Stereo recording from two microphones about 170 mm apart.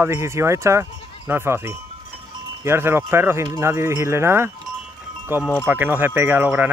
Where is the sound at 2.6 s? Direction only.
15° right (ahead or behind).